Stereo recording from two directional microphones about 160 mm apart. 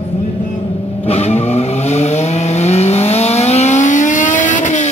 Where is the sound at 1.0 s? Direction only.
40° left (ahead or behind).